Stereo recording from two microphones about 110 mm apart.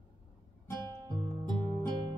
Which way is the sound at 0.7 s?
40° right (ahead or behind).